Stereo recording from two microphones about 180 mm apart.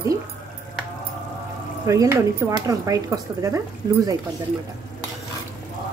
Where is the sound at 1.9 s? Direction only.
15° right (ahead or behind).